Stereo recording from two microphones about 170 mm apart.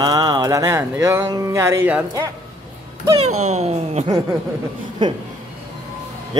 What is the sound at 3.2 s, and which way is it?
Speech, 40° right (ahead or behind).